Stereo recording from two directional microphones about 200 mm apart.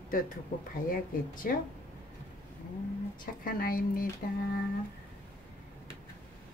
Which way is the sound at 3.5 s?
45° left (ahead or behind).